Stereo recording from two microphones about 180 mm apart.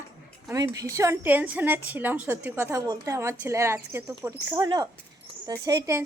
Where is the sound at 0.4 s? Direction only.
20° right (ahead or behind).